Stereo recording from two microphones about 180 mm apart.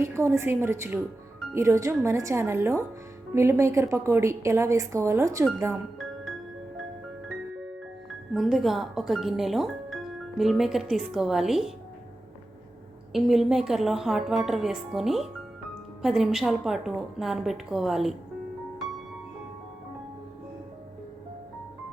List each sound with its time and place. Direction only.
0.0 s a woman's voice: 15° right (ahead or behind)
8.3 s speech: centre (ahead or behind)
13.1 s speech: centre (ahead or behind)